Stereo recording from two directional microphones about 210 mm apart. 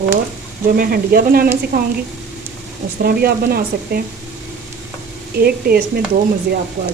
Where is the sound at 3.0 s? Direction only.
45° right (ahead or behind).